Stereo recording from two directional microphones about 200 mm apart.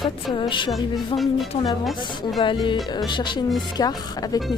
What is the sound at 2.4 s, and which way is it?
Speech, 25° left (ahead or behind).